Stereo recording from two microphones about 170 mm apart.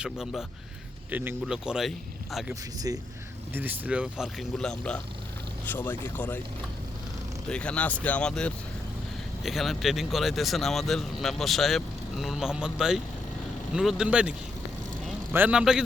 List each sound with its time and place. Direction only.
0.0 s speech: 5° right (ahead or behind)
2.9 s speech: 20° right (ahead or behind); by 6.4 s 10° left (ahead or behind)
7.4 s speech: 5° left (ahead or behind)